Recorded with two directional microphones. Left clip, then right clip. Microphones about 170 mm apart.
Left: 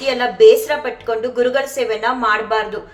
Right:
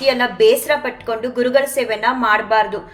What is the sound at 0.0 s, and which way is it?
A woman's voice, 15° right (ahead or behind).